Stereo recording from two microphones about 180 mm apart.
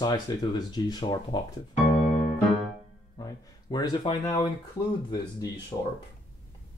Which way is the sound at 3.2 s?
25° left (ahead or behind).